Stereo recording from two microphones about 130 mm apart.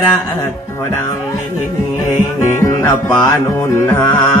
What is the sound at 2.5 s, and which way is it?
Music, 30° left (ahead or behind).